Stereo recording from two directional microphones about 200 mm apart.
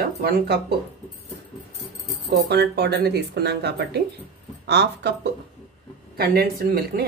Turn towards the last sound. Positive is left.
turn(degrees=-50)  # may be behind; listen again after turning